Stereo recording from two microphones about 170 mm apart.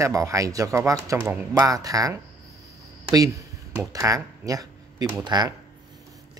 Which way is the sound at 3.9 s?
20° right (ahead or behind).